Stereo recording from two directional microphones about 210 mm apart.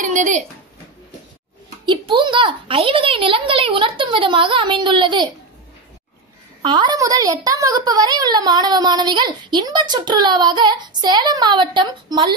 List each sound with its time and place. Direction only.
0.0 s a sound: 35° right (ahead or behind)
1.9 s a woman's voice: 20° right (ahead or behind)
6.6 s a woman's voice: 20° right (ahead or behind)